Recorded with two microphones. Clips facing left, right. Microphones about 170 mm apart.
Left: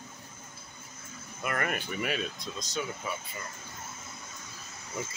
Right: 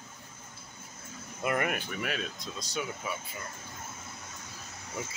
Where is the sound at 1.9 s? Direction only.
5° left (ahead or behind).